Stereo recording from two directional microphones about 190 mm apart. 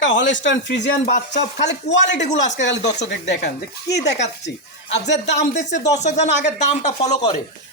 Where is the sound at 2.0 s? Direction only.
40° left (ahead or behind).